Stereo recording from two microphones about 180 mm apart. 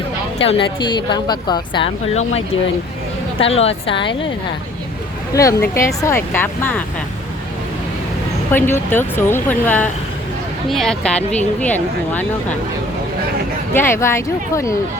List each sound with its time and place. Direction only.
0.4 s a woman's voice: 30° left (ahead or behind)
5.3 s a woman's voice: 15° left (ahead or behind)
8.5 s a woman's voice: 10° left (ahead or behind)
13.7 s a woman's voice: 15° left (ahead or behind)